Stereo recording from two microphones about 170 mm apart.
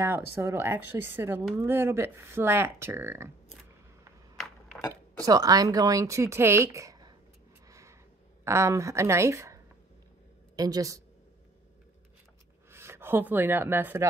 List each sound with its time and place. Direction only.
0.3 s speech: 15° right (ahead or behind)
4.4 s a sound: centre (ahead or behind)
5.2 s speech: 20° right (ahead or behind)
8.5 s speech: 15° right (ahead or behind)
12.7 s speech: 15° right (ahead or behind)